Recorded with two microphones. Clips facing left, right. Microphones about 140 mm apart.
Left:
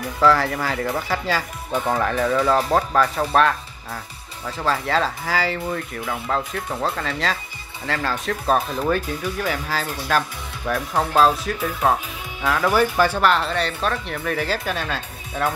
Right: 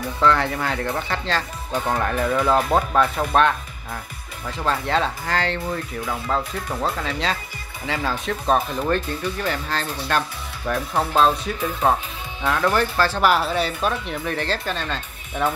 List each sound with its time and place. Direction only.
0.2 s speech: centre (ahead or behind)
10.7 s speech: 5° right (ahead or behind); by 13.2 s 15° left (ahead or behind)
13.2 s speech: 5° right (ahead or behind)